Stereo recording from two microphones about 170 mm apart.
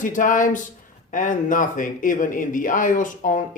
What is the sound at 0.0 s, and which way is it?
Speech, 50° left (ahead or behind).